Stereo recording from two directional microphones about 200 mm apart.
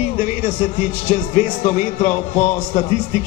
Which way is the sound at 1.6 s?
40° left (ahead or behind).